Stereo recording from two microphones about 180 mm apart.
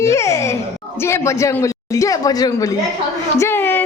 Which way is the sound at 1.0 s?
15° left (ahead or behind).